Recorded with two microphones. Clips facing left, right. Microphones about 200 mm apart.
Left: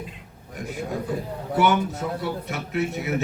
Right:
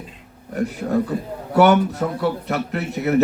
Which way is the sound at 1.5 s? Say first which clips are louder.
Right 7 dB; 65° right (ahead or behind).